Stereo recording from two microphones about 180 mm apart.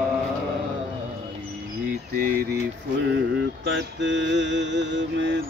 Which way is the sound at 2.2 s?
50° right (ahead or behind).